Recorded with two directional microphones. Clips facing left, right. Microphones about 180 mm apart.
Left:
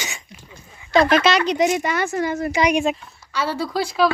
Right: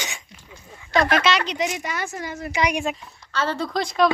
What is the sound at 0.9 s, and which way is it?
Speech, 35° left (ahead or behind).